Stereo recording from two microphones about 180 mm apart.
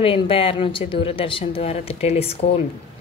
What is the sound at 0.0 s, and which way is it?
A woman's voice, 30° left (ahead or behind).